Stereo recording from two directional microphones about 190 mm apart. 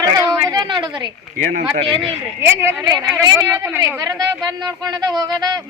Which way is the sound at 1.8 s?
30° right (ahead or behind).